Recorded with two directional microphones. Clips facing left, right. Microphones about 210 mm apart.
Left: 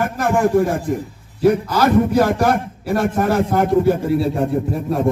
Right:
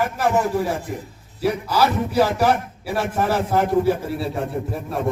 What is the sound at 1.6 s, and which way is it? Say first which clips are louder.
A man's voice: left 5 dB; 10° right (ahead or behind).